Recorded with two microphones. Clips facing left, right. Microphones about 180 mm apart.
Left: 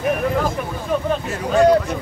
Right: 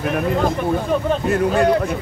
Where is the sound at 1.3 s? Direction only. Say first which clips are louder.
Even; 60° right (ahead or behind).